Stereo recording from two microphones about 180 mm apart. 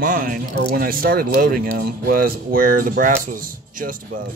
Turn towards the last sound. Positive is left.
turn(degrees=-50)  # may be behind; listen again after turning